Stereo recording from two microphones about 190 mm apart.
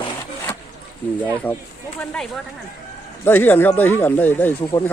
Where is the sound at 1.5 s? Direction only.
10° left (ahead or behind).